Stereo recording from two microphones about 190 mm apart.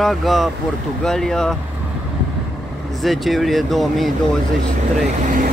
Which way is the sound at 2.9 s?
Centre (ahead or behind).